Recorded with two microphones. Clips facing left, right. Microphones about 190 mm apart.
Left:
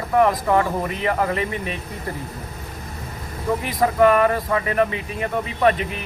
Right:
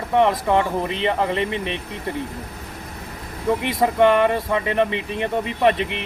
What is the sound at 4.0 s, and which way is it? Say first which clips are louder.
Speech: even; 25° right (ahead or behind).